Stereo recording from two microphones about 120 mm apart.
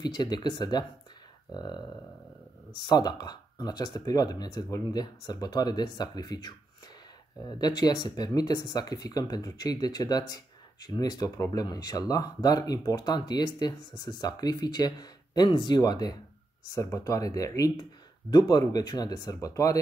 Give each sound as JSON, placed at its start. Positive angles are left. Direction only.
{"t": 0.0, "sound": "speech", "side_deg": 35}